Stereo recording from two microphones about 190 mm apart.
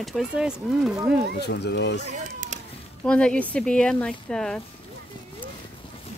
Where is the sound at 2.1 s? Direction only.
40° right (ahead or behind).